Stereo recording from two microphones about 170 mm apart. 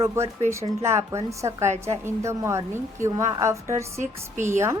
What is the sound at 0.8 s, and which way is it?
Speech, 15° right (ahead or behind).